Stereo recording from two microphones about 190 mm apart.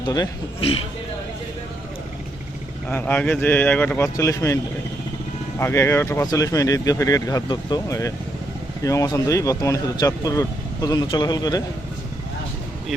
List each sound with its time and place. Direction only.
0.0 s speech: 25° left (ahead or behind)
2.9 s speech: 10° left (ahead or behind)